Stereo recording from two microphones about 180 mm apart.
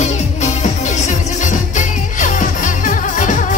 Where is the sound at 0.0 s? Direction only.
40° left (ahead or behind).